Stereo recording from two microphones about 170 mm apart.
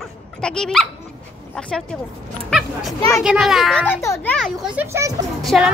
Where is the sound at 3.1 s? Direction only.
5° right (ahead or behind).